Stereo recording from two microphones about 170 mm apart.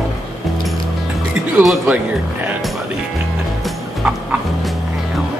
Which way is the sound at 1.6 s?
Centre (ahead or behind).